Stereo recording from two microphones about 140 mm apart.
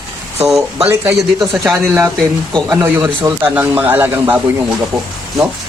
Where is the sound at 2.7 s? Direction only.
15° right (ahead or behind).